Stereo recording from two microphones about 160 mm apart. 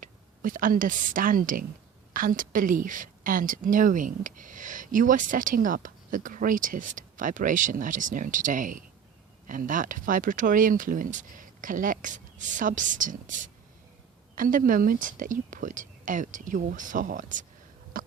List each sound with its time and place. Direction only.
0.0 s a woman's voice: 55° right (ahead or behind)
18.0 s cough: 60° right (ahead or behind)